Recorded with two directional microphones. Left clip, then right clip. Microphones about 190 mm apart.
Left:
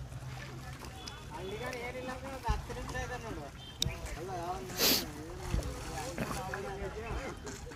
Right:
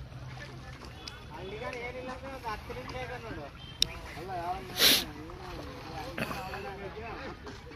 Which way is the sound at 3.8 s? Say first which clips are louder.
Right 5 dB; 10° left (ahead or behind).